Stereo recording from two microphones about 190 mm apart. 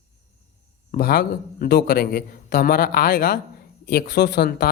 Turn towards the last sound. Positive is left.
turn(degrees=55)  # may be behind; listen again after turning